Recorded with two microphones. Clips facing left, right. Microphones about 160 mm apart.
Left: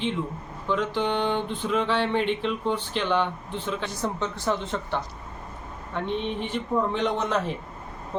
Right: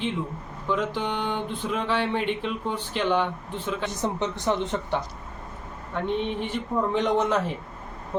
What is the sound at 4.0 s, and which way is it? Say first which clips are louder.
Speech: right 2 dB; 20° right (ahead or behind).